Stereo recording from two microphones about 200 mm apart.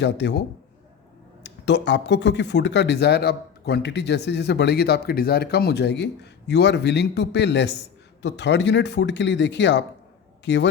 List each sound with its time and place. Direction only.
0.0 s speech: 60° left (ahead or behind)
1.5 s a man's voice: 60° left (ahead or behind)